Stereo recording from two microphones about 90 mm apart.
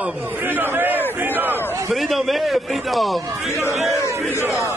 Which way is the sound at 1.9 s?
Centre (ahead or behind).